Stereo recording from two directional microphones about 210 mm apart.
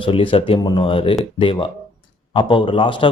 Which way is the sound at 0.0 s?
25° left (ahead or behind).